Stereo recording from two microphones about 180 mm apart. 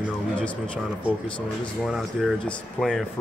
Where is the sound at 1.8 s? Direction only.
Centre (ahead or behind).